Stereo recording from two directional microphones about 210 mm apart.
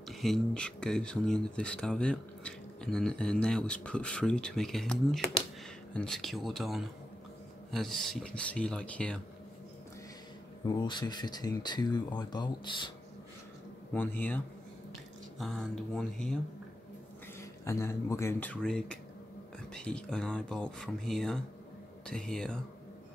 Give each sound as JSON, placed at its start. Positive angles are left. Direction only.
{"t": 0.1, "sound": "speech", "side_deg": 0}
{"t": 10.7, "sound": "speech", "side_deg": 20}
{"t": 13.9, "sound": "speech", "side_deg": 10}
{"t": 17.4, "sound": "speech", "side_deg": 15}